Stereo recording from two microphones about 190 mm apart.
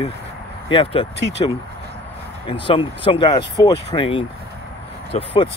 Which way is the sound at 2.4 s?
25° left (ahead or behind).